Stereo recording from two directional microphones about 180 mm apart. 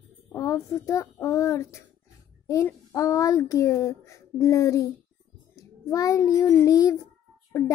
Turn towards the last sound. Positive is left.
turn(degrees=15)  # may be behind; listen again after turning